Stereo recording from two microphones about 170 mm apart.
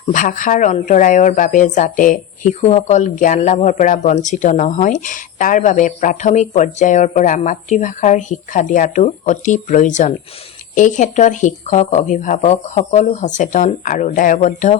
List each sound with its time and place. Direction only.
0.1 s speech: 50° left (ahead or behind)